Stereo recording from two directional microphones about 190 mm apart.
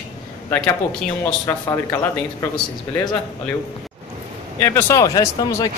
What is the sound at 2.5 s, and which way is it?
Speech, 20° left (ahead or behind).